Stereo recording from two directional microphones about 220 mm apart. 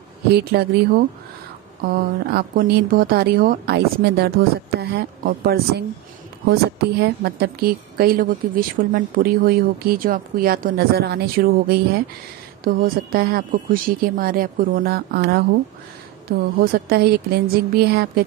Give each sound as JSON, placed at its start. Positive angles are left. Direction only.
{"t": 0.3, "sound": "a woman's voice", "side_deg": -45}